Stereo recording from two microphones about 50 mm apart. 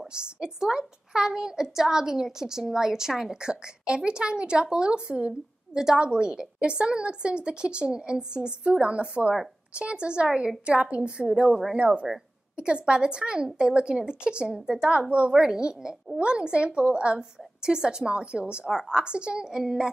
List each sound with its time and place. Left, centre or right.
0.1 s a woman's voice: centre